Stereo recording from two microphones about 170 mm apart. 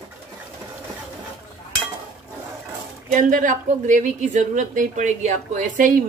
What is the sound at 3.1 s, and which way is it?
A woman's voice, 50° right (ahead or behind).